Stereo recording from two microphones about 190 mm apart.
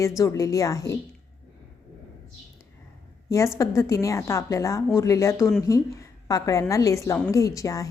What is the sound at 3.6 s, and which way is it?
A woman's voice, 15° left (ahead or behind).